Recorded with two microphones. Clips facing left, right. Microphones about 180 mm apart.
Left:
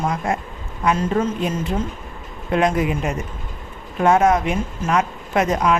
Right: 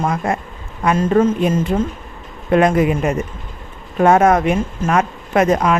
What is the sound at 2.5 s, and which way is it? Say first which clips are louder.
Speech: right 5 dB; 55° right (ahead or behind).